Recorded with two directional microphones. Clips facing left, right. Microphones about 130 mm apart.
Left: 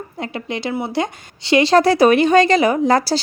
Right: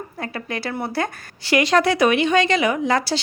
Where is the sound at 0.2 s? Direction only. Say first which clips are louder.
Left 3 dB; 20° left (ahead or behind).